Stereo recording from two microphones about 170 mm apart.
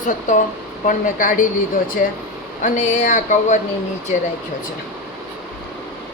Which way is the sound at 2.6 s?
45° left (ahead or behind).